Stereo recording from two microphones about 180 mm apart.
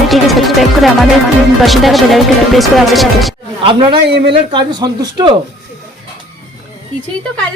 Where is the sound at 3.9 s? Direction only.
70° right (ahead or behind).